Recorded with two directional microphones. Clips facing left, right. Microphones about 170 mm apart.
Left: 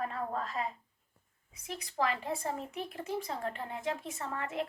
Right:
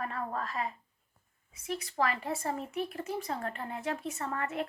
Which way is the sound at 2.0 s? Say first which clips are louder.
Even; 20° left (ahead or behind).